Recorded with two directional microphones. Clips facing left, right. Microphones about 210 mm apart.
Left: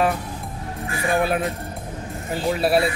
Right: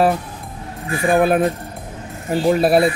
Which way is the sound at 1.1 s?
50° right (ahead or behind).